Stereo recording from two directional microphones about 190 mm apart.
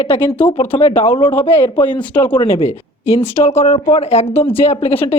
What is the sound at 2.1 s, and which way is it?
Speech, 10° left (ahead or behind).